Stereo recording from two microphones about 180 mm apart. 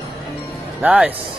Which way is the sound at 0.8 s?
5° right (ahead or behind).